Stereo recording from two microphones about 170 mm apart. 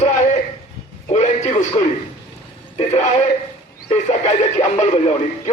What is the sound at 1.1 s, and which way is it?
Speech, 40° left (ahead or behind).